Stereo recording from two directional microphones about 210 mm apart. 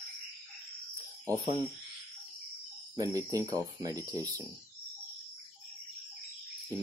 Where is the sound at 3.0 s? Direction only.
15° right (ahead or behind).